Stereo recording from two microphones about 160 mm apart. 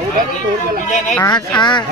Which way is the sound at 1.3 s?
25° left (ahead or behind).